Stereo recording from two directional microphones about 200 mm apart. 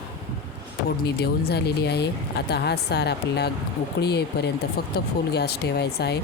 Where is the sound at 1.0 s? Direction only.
55° left (ahead or behind).